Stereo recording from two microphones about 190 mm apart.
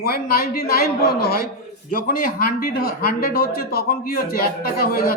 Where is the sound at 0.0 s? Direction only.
50° left (ahead or behind).